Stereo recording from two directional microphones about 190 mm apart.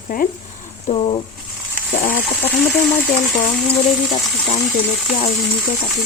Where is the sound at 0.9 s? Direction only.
30° left (ahead or behind).